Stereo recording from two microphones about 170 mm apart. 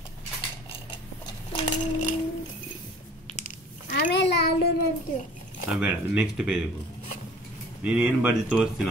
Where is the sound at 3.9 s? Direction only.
70° left (ahead or behind).